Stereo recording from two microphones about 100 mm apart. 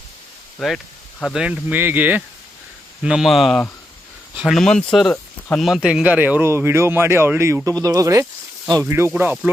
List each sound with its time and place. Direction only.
0.6 s a man's voice: centre (ahead or behind)
3.0 s a man's voice: 5° right (ahead or behind); by 8.8 s 40° right (ahead or behind)
8.8 s speech: 25° right (ahead or behind)